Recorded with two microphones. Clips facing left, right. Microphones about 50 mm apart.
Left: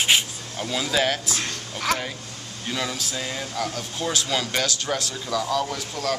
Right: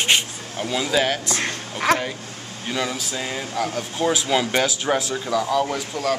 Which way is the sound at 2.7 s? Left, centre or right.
Centre.